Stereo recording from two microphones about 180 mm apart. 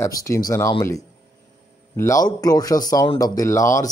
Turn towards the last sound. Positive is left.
turn(degrees=15)  # may be behind; listen again after turning